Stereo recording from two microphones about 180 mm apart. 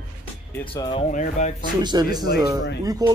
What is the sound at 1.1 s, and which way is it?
Speech, 45° left (ahead or behind).